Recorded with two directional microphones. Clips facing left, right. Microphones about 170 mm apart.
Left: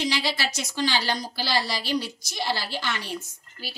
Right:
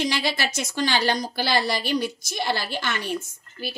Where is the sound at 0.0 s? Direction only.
50° right (ahead or behind).